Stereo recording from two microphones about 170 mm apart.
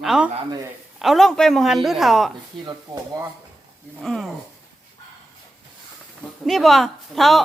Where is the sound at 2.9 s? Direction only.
25° right (ahead or behind).